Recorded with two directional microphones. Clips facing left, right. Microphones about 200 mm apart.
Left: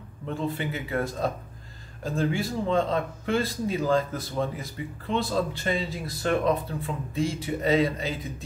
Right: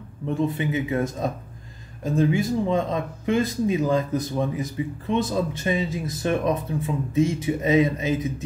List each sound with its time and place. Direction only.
0.6 s speech: 20° right (ahead or behind)